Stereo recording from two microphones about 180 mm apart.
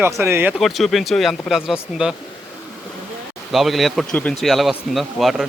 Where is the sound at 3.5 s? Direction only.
Centre (ahead or behind).